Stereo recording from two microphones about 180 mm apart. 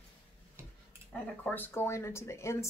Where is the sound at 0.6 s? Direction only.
15° right (ahead or behind).